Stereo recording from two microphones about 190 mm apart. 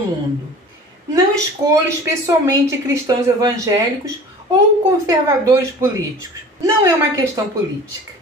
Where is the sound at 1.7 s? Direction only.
15° right (ahead or behind).